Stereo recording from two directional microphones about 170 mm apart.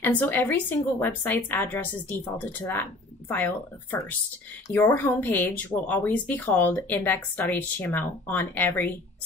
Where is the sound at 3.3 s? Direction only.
10° left (ahead or behind).